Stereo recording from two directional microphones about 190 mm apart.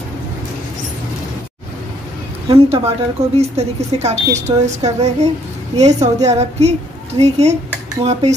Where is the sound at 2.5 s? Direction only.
30° right (ahead or behind).